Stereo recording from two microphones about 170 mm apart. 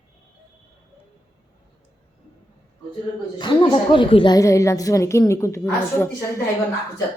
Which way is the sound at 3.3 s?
30° left (ahead or behind).